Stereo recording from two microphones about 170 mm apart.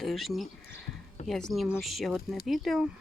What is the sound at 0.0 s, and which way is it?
Speech, centre (ahead or behind).